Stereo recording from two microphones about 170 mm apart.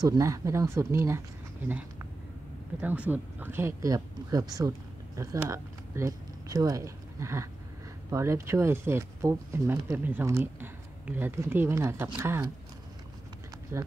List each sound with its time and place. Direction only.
0.0 s speech: 20° right (ahead or behind)
2.8 s speech: 10° right (ahead or behind)